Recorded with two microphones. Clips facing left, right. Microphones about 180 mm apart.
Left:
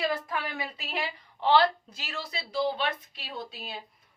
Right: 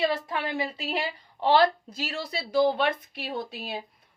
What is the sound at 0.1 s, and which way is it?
A woman's voice, 25° right (ahead or behind).